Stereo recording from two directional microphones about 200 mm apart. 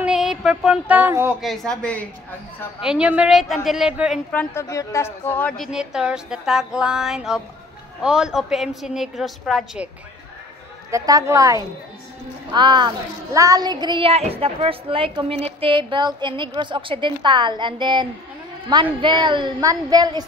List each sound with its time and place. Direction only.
0.0 s a sound: 5° right (ahead or behind)
1.4 s a woman's voice: centre (ahead or behind)
4.3 s a woman's voice: 10° left (ahead or behind)
10.9 s a woman's voice: 15° right (ahead or behind)